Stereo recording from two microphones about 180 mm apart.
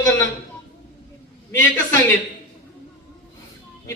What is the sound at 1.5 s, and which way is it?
Speech, 15° left (ahead or behind).